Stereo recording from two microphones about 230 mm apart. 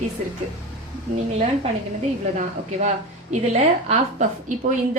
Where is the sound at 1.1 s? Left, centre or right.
Right.